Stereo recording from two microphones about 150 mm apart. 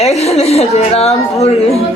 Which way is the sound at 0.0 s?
45° left (ahead or behind).